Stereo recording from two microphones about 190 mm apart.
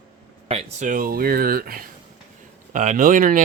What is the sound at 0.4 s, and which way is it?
Speech, 35° right (ahead or behind).